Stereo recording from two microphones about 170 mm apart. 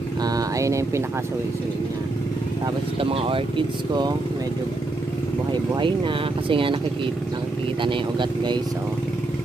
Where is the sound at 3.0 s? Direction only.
35° right (ahead or behind).